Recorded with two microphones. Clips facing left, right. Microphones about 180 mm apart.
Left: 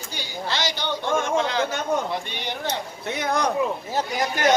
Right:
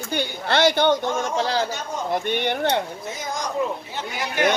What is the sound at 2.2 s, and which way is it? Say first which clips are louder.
Speech: right 7 dB; 55° right (ahead or behind).